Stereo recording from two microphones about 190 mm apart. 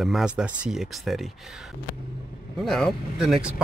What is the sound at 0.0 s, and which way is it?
A man's voice, centre (ahead or behind).